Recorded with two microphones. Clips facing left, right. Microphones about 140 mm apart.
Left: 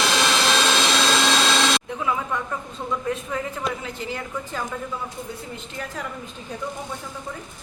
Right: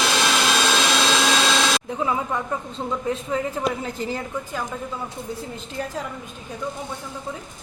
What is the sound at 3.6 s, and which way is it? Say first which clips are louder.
Speech: right 4 dB; 40° right (ahead or behind).